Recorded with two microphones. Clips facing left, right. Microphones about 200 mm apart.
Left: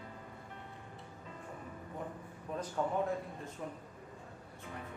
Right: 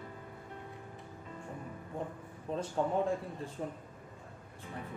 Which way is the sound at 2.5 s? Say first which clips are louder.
Right 4 dB; 30° right (ahead or behind).